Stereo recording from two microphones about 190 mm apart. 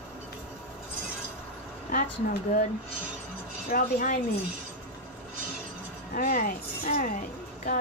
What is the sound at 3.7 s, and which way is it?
Speech, 50° left (ahead or behind).